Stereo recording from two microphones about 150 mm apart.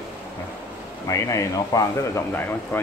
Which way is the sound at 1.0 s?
20° left (ahead or behind).